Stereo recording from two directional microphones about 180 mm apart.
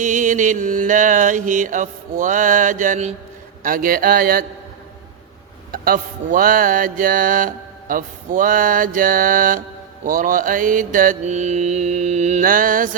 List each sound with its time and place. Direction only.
0.0 s mantra: 45° right (ahead or behind)
5.7 s mantra: 55° right (ahead or behind)